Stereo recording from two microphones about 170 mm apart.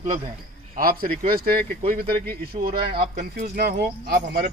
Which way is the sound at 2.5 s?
35° right (ahead or behind).